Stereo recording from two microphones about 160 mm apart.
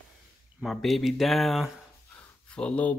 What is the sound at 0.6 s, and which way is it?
Speech, centre (ahead or behind).